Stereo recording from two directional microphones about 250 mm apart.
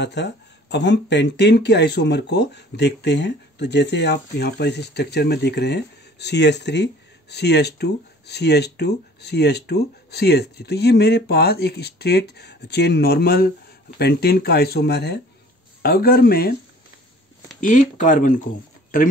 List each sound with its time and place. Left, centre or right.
0.0 s speech: left
17.6 s speech: left